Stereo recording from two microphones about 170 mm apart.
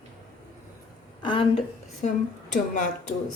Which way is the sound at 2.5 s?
50° left (ahead or behind).